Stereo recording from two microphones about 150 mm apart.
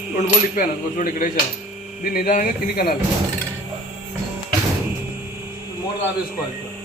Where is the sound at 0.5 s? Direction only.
65° left (ahead or behind).